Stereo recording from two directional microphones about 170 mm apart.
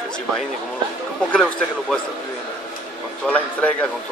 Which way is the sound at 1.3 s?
5° left (ahead or behind).